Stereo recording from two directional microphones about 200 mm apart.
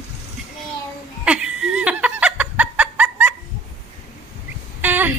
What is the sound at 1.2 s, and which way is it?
Laughter, 5° right (ahead or behind).